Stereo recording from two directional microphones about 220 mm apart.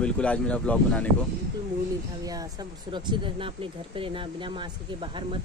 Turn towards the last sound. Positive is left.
turn(degrees=-25)  # may be behind; listen again after turning